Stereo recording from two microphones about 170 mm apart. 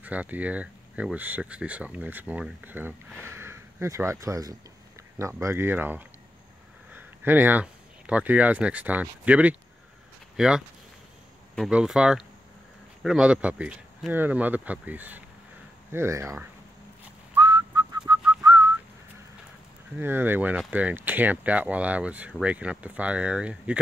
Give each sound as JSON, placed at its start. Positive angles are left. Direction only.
{"t": 0.0, "sound": "speech", "side_deg": -10}
{"t": 17.4, "sound": "whistling", "side_deg": -25}
{"t": 20.0, "sound": "speech", "side_deg": -10}